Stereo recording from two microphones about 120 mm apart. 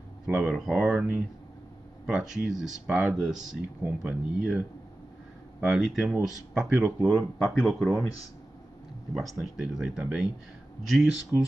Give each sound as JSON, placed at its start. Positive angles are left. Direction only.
{"t": 0.3, "sound": "speech", "side_deg": -5}
{"t": 7.9, "sound": "speech", "side_deg": 25}
{"t": 9.1, "sound": "speech", "side_deg": 0}